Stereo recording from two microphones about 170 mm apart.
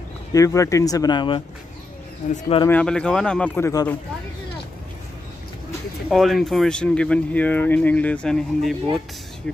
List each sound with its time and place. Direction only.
0.3 s speech: 20° left (ahead or behind)
2.2 s speech: 45° left (ahead or behind)
2.7 s speech: 5° left (ahead or behind)
6.0 s speech: centre (ahead or behind)